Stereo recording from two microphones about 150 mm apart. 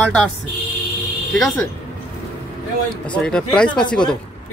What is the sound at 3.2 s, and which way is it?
Speech, 5° left (ahead or behind).